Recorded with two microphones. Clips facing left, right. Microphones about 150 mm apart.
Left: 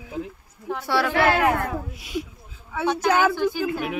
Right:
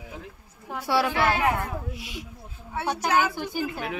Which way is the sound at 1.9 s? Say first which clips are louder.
Left 8 dB; 45° left (ahead or behind).